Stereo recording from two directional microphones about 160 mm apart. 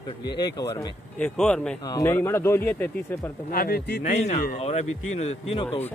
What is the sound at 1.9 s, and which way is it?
Speech, 20° left (ahead or behind).